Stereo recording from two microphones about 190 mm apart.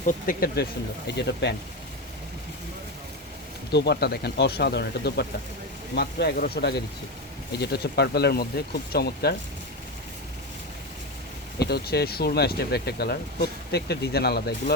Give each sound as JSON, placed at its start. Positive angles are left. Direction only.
{"t": 0.0, "sound": "speech", "side_deg": 45}
{"t": 1.0, "sound": "speech", "side_deg": 60}
{"t": 3.7, "sound": "speech", "side_deg": 60}
{"t": 11.6, "sound": "speech", "side_deg": 55}